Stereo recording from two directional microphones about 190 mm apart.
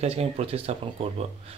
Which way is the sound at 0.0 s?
30° right (ahead or behind).